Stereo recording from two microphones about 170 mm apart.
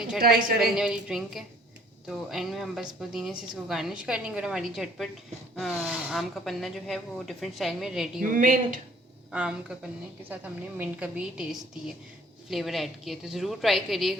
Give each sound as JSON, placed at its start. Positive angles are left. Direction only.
{"t": 0.6, "sound": "speech", "side_deg": -5}
{"t": 8.2, "sound": "a woman's voice", "side_deg": -50}
{"t": 9.3, "sound": "a woman's voice", "side_deg": -5}
{"t": 12.5, "sound": "speech", "side_deg": 0}